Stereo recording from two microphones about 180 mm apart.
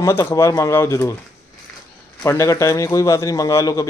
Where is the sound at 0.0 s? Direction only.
15° left (ahead or behind).